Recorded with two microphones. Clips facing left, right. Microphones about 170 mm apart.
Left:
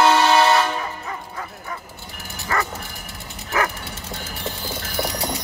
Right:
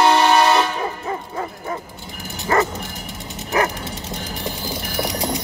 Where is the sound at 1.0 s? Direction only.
30° right (ahead or behind).